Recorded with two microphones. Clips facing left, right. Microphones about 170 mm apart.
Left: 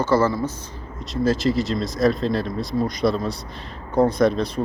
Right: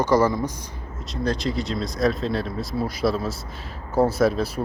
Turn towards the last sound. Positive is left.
turn(degrees=-5)  # may be behind; listen again after turning